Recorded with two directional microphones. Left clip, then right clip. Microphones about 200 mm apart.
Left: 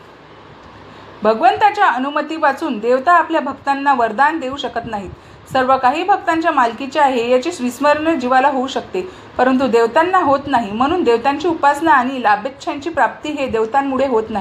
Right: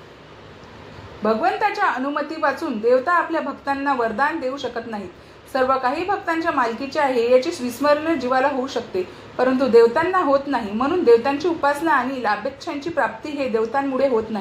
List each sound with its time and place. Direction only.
1.2 s a woman's voice: 30° left (ahead or behind)
5.5 s a woman's voice: 30° left (ahead or behind)